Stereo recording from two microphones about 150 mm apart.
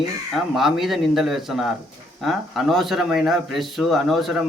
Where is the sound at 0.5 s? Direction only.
Centre (ahead or behind).